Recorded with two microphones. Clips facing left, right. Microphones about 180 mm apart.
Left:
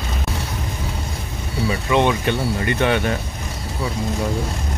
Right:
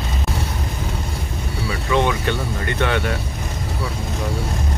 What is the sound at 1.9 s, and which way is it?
Speech, 15° left (ahead or behind).